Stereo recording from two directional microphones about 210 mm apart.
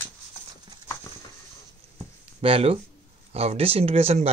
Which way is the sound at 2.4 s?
25° right (ahead or behind).